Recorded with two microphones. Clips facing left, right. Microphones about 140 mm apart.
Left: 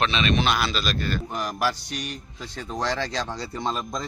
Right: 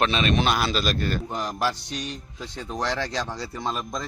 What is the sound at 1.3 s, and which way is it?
Speech, 25° right (ahead or behind).